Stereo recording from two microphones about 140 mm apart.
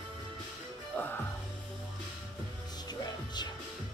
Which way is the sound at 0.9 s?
15° left (ahead or behind).